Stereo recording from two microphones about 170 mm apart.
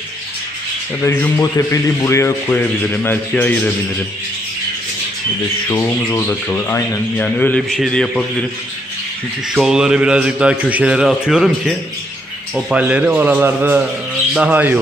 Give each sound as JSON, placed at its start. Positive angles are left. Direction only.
{"t": 1.0, "sound": "speech", "side_deg": 15}
{"t": 5.7, "sound": "speech", "side_deg": 15}
{"t": 9.5, "sound": "a man's voice", "side_deg": -5}